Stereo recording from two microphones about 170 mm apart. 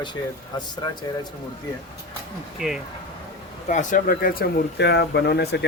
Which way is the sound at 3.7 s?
50° left (ahead or behind).